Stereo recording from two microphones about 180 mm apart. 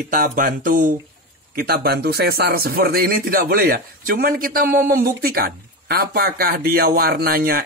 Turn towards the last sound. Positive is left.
turn(degrees=-60)  # may be behind; listen again after turning